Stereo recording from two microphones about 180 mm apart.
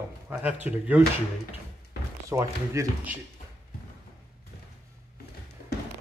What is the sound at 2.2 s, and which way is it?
Speech, 15° right (ahead or behind).